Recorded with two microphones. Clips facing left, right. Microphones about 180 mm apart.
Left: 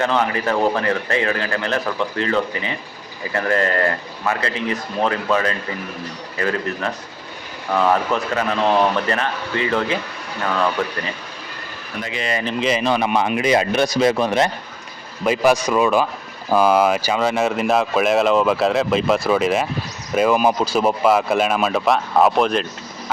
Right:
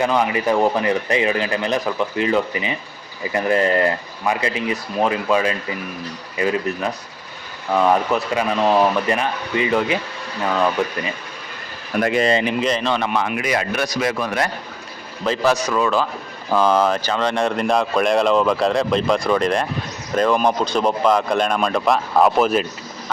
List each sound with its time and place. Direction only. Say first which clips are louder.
0.0 s speech: right 1 dB; 10° right (ahead or behind)
11.9 s speech: right 10 dB; 55° right (ahead or behind)
12.5 s speech: left 1 dB; 5° left (ahead or behind); by 14.5 s 25° left (ahead or behind)
15.2 s speech: left 2 dB; 10° left (ahead or behind); by 22.6 s 5° right (ahead or behind)